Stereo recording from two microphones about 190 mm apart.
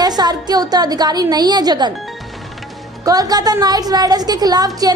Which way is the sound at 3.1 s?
20° right (ahead or behind).